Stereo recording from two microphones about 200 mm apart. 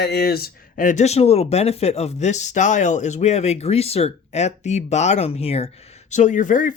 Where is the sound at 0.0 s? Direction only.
55° left (ahead or behind).